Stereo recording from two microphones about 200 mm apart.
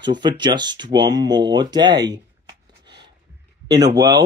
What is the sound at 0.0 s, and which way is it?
Speech, 20° right (ahead or behind).